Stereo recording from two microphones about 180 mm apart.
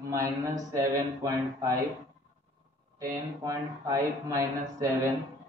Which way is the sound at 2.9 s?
20° right (ahead or behind).